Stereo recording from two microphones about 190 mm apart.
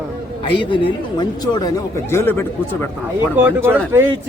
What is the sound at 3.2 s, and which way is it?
Speech, 10° right (ahead or behind).